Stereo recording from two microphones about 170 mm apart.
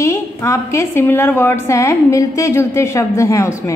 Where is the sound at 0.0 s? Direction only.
15° left (ahead or behind).